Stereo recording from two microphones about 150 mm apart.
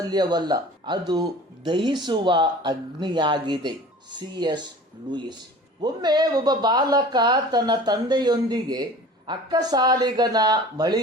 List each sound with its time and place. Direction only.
0.1 s speech: 30° right (ahead or behind)
5.8 s speech: 30° right (ahead or behind)